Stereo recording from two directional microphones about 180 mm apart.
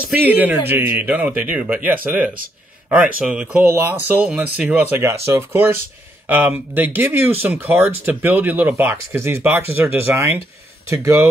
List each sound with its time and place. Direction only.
0.0 s speech: 10° right (ahead or behind)